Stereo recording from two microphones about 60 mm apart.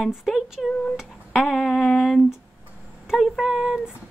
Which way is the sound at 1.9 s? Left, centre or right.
Centre.